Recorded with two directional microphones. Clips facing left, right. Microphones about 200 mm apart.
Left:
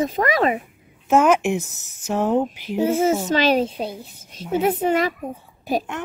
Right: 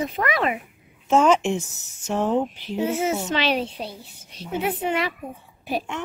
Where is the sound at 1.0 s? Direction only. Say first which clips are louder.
Left 2 dB; 5° left (ahead or behind).